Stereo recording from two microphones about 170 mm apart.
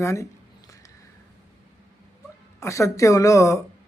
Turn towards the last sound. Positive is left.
turn(degrees=20)  # may be behind; listen again after turning